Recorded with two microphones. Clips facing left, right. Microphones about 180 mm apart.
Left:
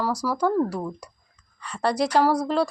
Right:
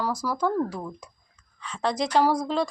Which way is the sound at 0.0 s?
5° left (ahead or behind).